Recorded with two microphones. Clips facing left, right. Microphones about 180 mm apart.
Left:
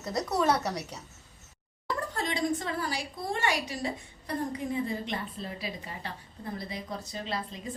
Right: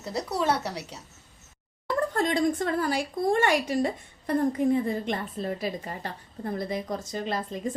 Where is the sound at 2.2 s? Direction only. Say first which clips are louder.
Right 5 dB; 50° right (ahead or behind).